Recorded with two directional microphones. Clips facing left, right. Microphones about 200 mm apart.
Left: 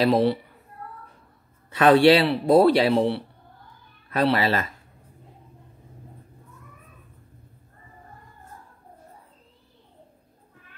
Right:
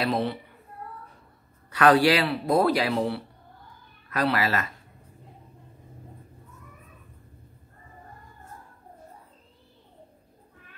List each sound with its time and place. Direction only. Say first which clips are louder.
0.0 s a child's voice: left 7 dB; 35° left (ahead or behind)
1.7 s speech: left 4 dB; 25° left (ahead or behind)